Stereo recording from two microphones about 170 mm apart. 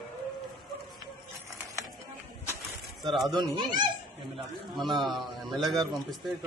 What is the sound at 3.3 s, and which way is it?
Speech, 25° right (ahead or behind).